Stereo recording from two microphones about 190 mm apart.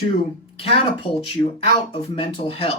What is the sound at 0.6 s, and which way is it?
Speech, 30° left (ahead or behind).